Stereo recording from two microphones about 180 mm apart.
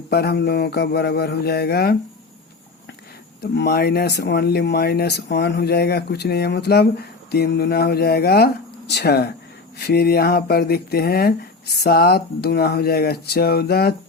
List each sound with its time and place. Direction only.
0.1 s speech: 65° left (ahead or behind)
3.4 s speech: 65° left (ahead or behind)